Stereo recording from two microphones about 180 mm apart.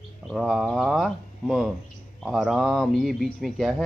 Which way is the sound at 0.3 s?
Centre (ahead or behind).